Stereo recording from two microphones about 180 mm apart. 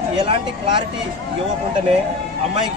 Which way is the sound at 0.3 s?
25° right (ahead or behind).